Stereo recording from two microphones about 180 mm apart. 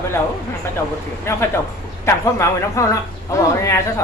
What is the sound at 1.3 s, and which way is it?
A woman's voice, 15° left (ahead or behind).